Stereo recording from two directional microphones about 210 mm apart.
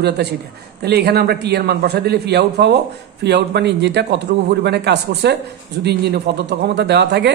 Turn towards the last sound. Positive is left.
turn(degrees=-55)  # may be behind; listen again after turning